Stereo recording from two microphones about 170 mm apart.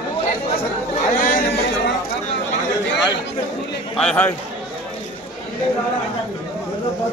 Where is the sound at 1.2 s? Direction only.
55° left (ahead or behind).